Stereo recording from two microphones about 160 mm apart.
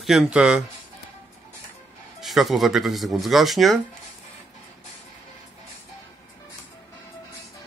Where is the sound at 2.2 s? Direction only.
Centre (ahead or behind).